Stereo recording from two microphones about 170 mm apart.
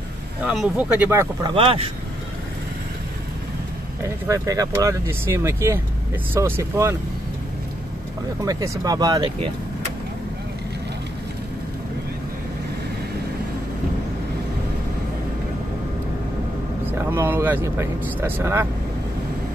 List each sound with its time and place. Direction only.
0.5 s speech: 10° right (ahead or behind)
1.5 s speech: 35° right (ahead or behind)
4.3 s speech: 20° right (ahead or behind)
8.5 s speech: 20° right (ahead or behind)
17.0 s speech: 15° right (ahead or behind)